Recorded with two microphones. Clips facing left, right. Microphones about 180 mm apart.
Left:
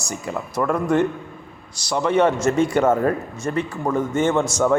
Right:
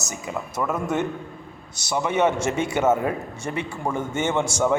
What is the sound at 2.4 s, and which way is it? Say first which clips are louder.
A man's voice: left 4 dB; 10° right (ahead or behind).